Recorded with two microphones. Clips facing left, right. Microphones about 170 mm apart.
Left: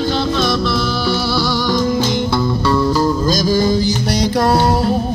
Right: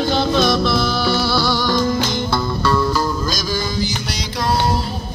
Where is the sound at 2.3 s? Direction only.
25° left (ahead or behind).